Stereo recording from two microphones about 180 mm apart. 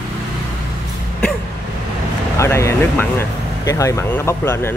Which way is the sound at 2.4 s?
15° left (ahead or behind).